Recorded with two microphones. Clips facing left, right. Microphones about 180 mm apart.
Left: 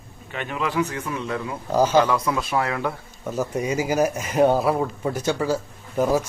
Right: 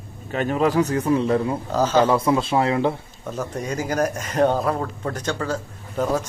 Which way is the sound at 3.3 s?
10° left (ahead or behind).